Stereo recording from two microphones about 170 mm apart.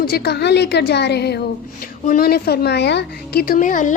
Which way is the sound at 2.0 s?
60° left (ahead or behind).